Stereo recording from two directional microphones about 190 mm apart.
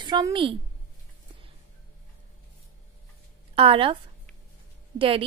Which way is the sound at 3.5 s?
30° right (ahead or behind).